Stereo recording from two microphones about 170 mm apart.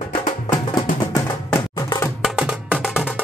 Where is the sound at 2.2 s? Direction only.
5° right (ahead or behind).